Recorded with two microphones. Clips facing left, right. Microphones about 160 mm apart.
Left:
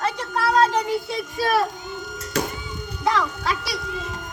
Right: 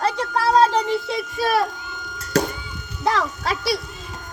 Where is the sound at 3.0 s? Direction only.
30° right (ahead or behind).